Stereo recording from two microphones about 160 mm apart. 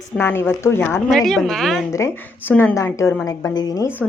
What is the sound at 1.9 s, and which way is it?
A woman's voice, 15° left (ahead or behind).